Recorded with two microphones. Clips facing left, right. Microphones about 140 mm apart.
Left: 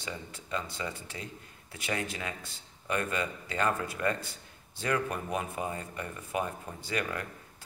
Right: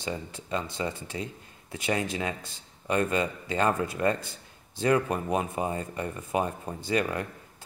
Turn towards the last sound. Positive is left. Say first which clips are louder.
# right 6 dB
turn(degrees=-25)  # may be behind; listen again after turning